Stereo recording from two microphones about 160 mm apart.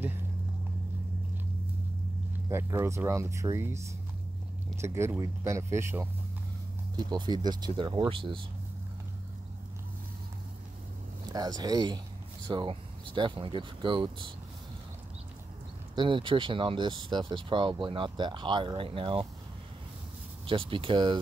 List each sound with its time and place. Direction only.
2.5 s speech: 15° right (ahead or behind)
7.0 s speech: 25° right (ahead or behind)
11.2 s speech: 25° right (ahead or behind)
15.9 s speech: 30° right (ahead or behind)
20.4 s speech: 35° right (ahead or behind)